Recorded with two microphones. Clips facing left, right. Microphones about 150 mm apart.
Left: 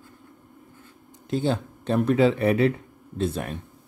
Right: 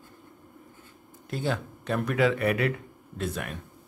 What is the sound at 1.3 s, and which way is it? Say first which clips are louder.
A man's voice: left 5 dB; 30° left (ahead or behind).